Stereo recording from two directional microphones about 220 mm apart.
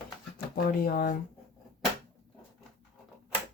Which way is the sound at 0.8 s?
40° left (ahead or behind).